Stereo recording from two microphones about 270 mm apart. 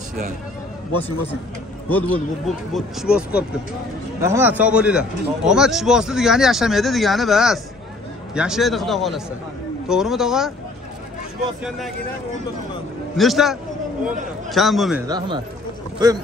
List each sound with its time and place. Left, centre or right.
1.9 s speech: centre
13.2 s speech: centre
15.0 s speech: centre